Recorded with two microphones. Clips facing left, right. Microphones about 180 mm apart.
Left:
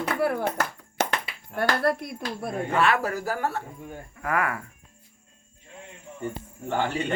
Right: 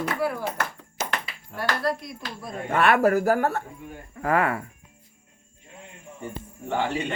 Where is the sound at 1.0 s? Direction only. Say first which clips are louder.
Left 4 dB; 65° left (ahead or behind).